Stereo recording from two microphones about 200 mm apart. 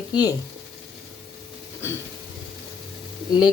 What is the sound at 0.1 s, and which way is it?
Speech, 20° left (ahead or behind).